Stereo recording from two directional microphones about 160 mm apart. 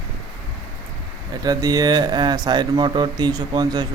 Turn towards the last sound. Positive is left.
turn(degrees=-25)  # may be behind; listen again after turning